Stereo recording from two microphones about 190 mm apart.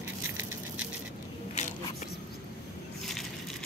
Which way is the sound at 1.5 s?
35° left (ahead or behind).